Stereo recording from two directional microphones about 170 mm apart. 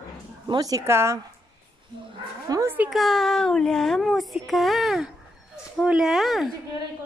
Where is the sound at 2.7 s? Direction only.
5° right (ahead or behind).